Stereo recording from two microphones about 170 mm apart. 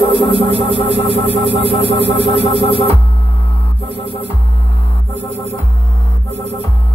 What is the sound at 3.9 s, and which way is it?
Music, 35° right (ahead or behind).